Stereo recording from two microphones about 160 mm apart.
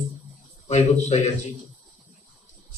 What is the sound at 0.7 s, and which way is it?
Speech, 45° left (ahead or behind).